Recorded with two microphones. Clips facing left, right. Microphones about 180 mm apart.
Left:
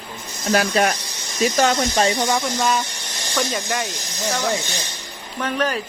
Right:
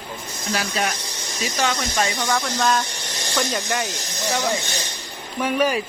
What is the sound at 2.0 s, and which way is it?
Speech, 25° left (ahead or behind).